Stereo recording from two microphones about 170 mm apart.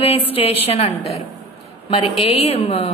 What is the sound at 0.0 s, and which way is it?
A woman's voice, 35° left (ahead or behind).